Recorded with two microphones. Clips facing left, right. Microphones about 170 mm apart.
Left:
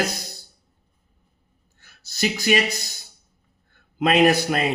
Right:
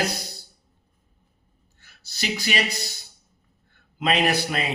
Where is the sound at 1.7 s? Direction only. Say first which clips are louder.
Left 6 dB; 45° left (ahead or behind).